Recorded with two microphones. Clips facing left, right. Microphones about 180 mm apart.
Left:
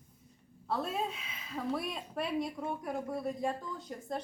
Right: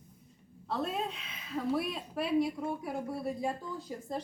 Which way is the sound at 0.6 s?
Centre (ahead or behind).